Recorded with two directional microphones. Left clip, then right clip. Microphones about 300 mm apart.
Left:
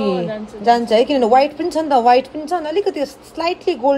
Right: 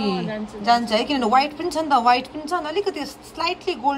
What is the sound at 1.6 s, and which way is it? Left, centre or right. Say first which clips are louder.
A woman's voice: left 4 dB; right.